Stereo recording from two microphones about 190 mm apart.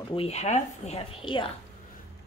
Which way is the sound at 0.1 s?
30° left (ahead or behind).